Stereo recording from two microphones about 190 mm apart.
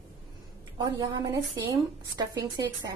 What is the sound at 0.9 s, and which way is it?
A woman's voice, 25° right (ahead or behind).